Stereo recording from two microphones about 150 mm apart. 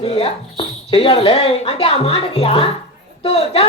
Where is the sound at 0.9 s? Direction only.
40° left (ahead or behind).